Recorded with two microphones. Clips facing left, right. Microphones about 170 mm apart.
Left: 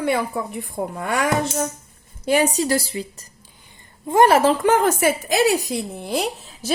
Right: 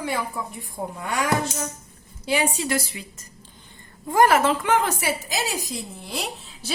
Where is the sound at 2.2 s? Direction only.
45° left (ahead or behind).